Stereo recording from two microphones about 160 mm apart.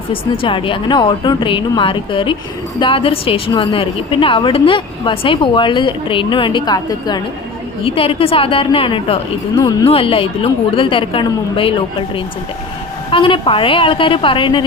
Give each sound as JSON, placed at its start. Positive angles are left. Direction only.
{"t": 0.1, "sound": "a woman's voice", "side_deg": 35}
{"t": 7.9, "sound": "a woman's voice", "side_deg": 35}
{"t": 9.6, "sound": "speech", "side_deg": 25}
{"t": 9.9, "sound": "a woman's voice", "side_deg": 35}
{"t": 13.1, "sound": "a woman's voice", "side_deg": 30}